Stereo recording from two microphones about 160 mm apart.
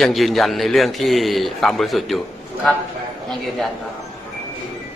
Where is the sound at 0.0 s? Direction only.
Centre (ahead or behind).